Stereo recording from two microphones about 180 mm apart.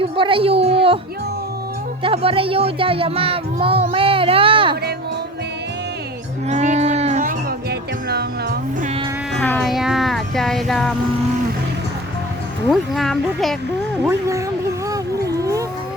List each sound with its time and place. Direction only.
0.0 s speech: 30° right (ahead or behind)
2.0 s speech: 30° right (ahead or behind)
6.5 s a sound: 40° right (ahead or behind)
7.7 s music: 65° right (ahead or behind)
9.3 s speech: 5° left (ahead or behind)
12.6 s speech: centre (ahead or behind)
14.0 s speech: 15° right (ahead or behind)
14.8 s a sound: 20° right (ahead or behind)